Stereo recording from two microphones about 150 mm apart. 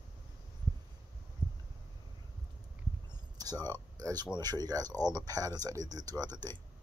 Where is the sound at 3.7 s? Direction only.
25° right (ahead or behind).